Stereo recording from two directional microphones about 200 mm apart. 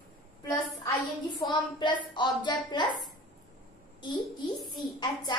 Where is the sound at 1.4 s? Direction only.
20° left (ahead or behind).